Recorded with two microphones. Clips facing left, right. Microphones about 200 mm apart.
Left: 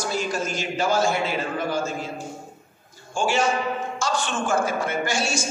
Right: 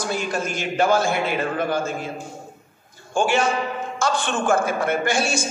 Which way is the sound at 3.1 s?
55° right (ahead or behind).